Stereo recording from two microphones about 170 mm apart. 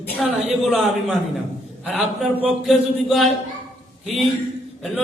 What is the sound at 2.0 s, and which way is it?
A man's voice, 5° right (ahead or behind).